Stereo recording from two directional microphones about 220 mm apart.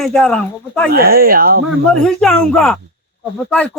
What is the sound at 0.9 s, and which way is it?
Speech, 45° right (ahead or behind).